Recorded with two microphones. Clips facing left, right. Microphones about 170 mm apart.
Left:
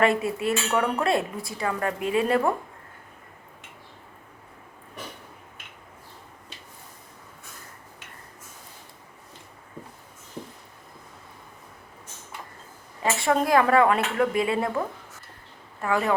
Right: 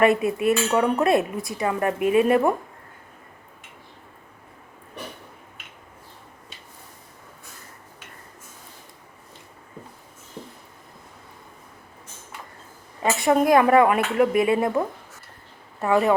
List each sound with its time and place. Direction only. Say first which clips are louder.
0.0 s dishes: right 4 dB; 20° right (ahead or behind)
13.1 s dishes: right 4 dB; 20° right (ahead or behind)
15.8 s dishes: right 5 dB; 20° right (ahead or behind)